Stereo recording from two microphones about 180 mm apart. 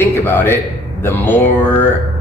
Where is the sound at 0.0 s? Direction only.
10° left (ahead or behind).